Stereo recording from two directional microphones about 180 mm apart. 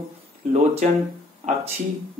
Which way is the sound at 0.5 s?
40° right (ahead or behind).